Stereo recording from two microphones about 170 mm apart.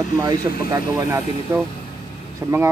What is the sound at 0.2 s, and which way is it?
Speech, 20° right (ahead or behind).